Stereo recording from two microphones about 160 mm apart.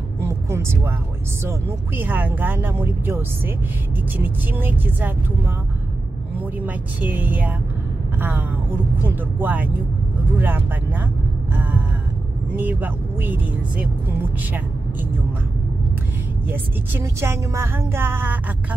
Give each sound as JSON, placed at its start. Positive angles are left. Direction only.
{"t": 0.2, "sound": "vehicle", "side_deg": -15}
{"t": 1.4, "sound": "speech", "side_deg": -15}
{"t": 6.3, "sound": "speech", "side_deg": -10}
{"t": 12.5, "sound": "speech", "side_deg": -10}
{"t": 16.4, "sound": "speech", "side_deg": -15}